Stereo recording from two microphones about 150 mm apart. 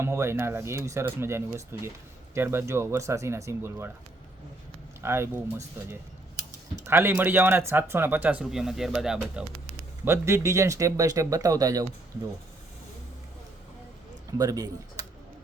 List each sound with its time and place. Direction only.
0.0 s speech: 15° right (ahead or behind)
4.9 s speech: 15° right (ahead or behind)
10.0 s speech: 20° right (ahead or behind)
14.3 s speech: 25° right (ahead or behind)